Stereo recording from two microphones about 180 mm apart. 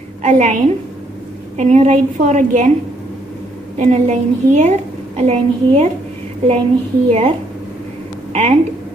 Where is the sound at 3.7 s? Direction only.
40° right (ahead or behind).